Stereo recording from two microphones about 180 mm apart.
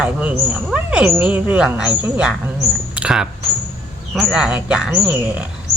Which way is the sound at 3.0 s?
5° right (ahead or behind).